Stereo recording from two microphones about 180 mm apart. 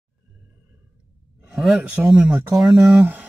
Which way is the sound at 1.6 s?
Centre (ahead or behind).